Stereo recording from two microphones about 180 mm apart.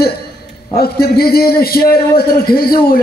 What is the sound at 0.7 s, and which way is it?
A man's voice, 60° left (ahead or behind).